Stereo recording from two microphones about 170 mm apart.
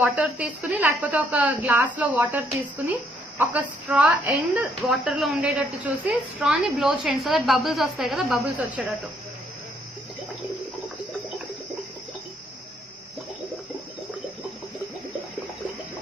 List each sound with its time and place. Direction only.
0.0 s a woman's voice: 5° right (ahead or behind)